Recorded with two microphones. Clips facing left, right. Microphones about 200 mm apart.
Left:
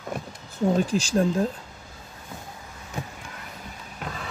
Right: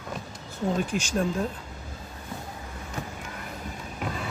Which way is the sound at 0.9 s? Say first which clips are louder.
Left 4 dB; 35° left (ahead or behind).